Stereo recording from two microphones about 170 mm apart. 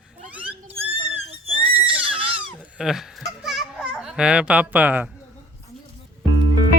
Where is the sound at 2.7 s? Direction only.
5° right (ahead or behind).